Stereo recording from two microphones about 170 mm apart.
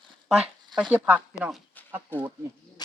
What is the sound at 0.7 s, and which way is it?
Speech, 5° right (ahead or behind).